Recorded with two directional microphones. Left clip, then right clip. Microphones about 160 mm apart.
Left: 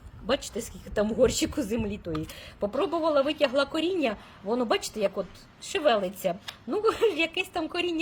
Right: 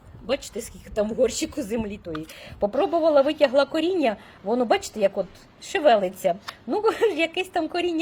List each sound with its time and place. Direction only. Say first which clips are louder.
0.3 s a woman's voice: right 1 dB; 15° right (ahead or behind)